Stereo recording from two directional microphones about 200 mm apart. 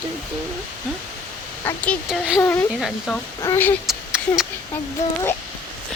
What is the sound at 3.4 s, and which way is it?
Speech, 10° left (ahead or behind).